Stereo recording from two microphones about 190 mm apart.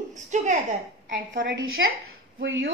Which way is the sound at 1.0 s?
70° right (ahead or behind).